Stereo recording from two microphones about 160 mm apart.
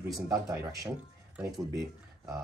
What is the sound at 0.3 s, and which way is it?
Speech, 20° right (ahead or behind).